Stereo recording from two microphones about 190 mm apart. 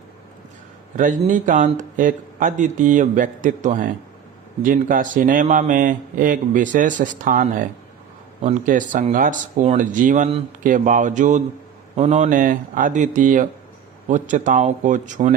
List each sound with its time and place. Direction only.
0.9 s speech: 45° right (ahead or behind)